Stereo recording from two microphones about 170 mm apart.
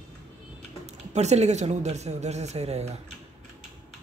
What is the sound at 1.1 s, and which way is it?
Speech, 40° right (ahead or behind).